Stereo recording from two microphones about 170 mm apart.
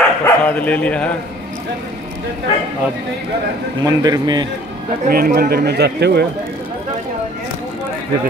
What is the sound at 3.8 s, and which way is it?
Speech, 20° right (ahead or behind).